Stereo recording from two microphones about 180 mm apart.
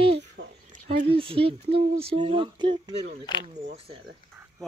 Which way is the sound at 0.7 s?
50° right (ahead or behind).